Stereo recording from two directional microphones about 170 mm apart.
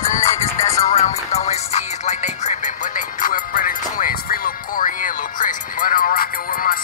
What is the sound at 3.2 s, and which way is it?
Music, 55° left (ahead or behind).